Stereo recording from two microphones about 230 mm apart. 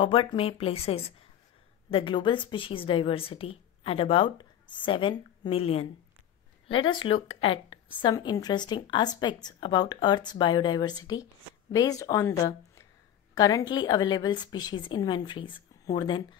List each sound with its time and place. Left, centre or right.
0.0 s a woman's voice: left